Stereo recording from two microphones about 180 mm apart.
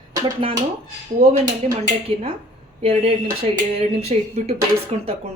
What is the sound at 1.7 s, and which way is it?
Speech, 30° right (ahead or behind).